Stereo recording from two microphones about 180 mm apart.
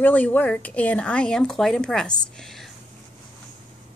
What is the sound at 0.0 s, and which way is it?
A woman's voice, 10° left (ahead or behind).